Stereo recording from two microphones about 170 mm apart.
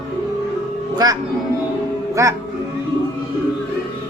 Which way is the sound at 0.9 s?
20° right (ahead or behind).